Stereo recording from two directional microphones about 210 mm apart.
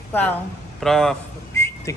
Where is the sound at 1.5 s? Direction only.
15° left (ahead or behind).